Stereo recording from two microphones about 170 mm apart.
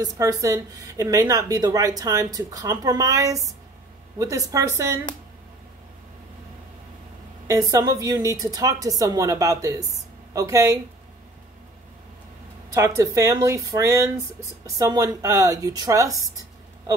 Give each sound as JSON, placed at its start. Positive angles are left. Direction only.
{"t": 0.0, "sound": "speech", "side_deg": -20}
{"t": 7.4, "sound": "speech", "side_deg": -20}
{"t": 12.6, "sound": "speech", "side_deg": -15}